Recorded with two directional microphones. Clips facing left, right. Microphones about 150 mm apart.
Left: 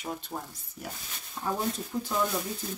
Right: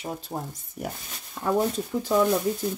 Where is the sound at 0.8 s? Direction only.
60° right (ahead or behind).